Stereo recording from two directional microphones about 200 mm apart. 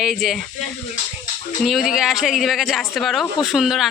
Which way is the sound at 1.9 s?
Centre (ahead or behind).